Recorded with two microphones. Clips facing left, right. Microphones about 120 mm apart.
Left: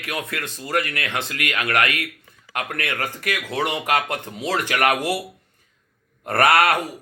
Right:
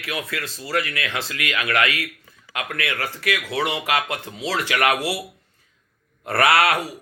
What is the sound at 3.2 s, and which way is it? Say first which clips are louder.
Speech: right 2 dB; 45° left (ahead or behind).